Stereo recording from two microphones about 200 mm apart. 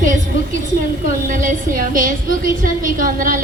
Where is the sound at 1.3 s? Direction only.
40° right (ahead or behind).